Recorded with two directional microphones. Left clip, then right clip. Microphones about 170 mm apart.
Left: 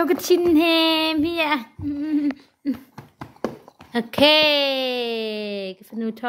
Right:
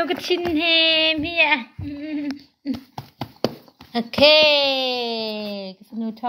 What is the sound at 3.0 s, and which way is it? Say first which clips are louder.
Clip-clop: right 5 dB; 30° right (ahead or behind).